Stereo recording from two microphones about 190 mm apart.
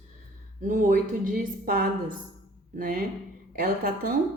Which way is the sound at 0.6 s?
40° right (ahead or behind).